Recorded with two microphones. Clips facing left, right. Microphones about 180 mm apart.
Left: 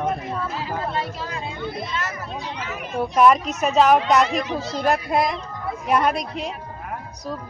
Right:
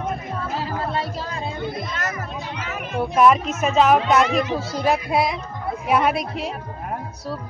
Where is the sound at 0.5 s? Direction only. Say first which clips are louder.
Right 5 dB; 35° right (ahead or behind).